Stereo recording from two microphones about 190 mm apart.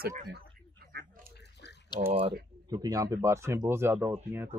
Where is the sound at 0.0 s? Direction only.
55° right (ahead or behind).